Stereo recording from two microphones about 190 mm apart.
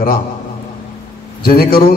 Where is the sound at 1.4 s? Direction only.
50° left (ahead or behind).